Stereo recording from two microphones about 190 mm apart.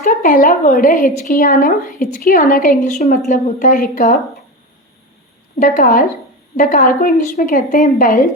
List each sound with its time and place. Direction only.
0.0 s a woman's voice: 45° left (ahead or behind)
5.5 s a woman's voice: 45° left (ahead or behind)